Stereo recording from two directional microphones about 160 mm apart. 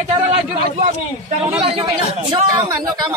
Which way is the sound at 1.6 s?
35° right (ahead or behind).